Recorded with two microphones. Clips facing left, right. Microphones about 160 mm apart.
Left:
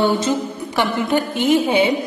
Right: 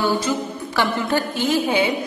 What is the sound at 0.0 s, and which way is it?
A woman's voice, 25° left (ahead or behind).